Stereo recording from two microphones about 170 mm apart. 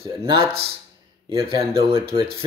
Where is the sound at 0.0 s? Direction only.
15° right (ahead or behind).